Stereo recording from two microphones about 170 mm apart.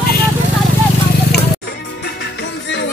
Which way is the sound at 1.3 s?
70° left (ahead or behind).